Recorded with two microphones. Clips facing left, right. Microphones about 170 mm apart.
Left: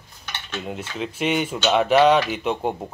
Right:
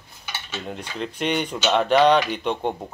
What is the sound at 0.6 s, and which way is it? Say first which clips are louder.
Speech: left 2 dB; 5° left (ahead or behind).